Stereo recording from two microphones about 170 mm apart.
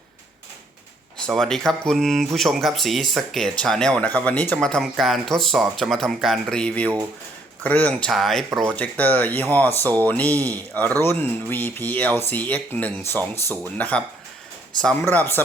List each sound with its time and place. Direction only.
1.3 s speech: 5° left (ahead or behind)